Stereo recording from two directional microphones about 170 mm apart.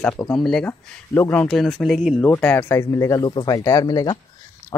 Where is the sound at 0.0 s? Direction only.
5° left (ahead or behind).